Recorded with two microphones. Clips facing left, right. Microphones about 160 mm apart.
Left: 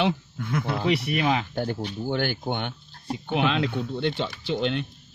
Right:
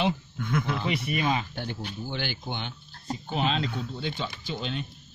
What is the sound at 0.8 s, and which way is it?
Speech, 75° left (ahead or behind).